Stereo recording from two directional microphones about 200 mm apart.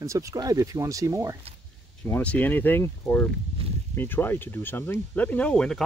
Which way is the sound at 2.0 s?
10° left (ahead or behind).